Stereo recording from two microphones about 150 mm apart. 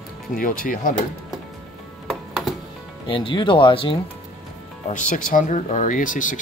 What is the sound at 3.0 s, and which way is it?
Speech, 35° left (ahead or behind).